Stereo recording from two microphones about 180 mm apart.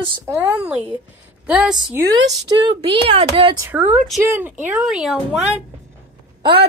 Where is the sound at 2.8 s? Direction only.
30° right (ahead or behind).